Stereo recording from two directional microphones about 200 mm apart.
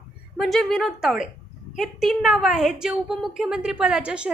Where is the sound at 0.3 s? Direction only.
Centre (ahead or behind).